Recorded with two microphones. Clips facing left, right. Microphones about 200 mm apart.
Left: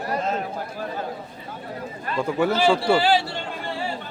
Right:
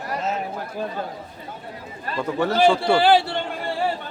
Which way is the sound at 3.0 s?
55° right (ahead or behind).